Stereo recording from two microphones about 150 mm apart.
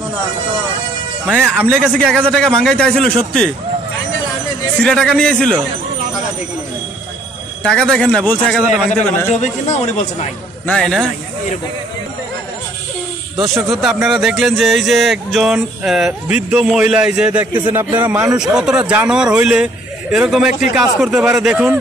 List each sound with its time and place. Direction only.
1.2 s speech: 15° right (ahead or behind)
1.9 s speech: 5° left (ahead or behind)
4.7 s speech: 5° left (ahead or behind)
7.6 s speech: 5° left (ahead or behind)
9.3 s a man's voice: 50° left (ahead or behind)
10.7 s speech: 5° left (ahead or behind)
13.7 s speech: centre (ahead or behind)